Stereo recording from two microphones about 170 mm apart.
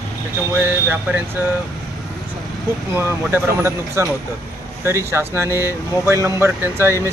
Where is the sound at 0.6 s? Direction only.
15° right (ahead or behind).